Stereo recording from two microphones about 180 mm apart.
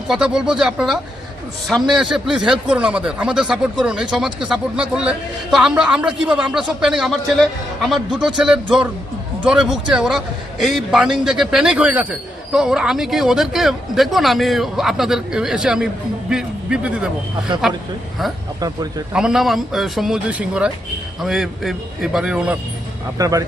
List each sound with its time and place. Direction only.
0.1 s speech: 5° right (ahead or behind)
19.1 s speech: 5° right (ahead or behind)
23.1 s speech: 20° right (ahead or behind)